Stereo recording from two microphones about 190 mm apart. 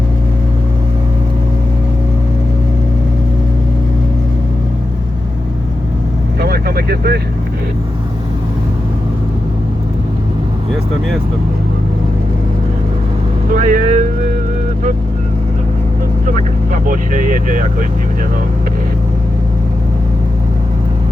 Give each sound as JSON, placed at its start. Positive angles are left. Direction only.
{"t": 6.4, "sound": "vehicle", "side_deg": -55}
{"t": 13.5, "sound": "vehicle", "side_deg": -45}
{"t": 16.2, "sound": "vehicle", "side_deg": -45}